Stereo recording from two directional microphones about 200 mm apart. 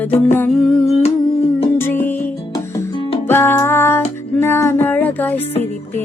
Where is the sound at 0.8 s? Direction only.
30° left (ahead or behind).